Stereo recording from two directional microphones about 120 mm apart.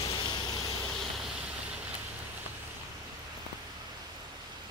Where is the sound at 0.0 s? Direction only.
40° left (ahead or behind).